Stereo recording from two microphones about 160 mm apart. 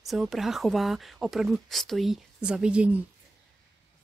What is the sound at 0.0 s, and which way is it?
Speech, centre (ahead or behind).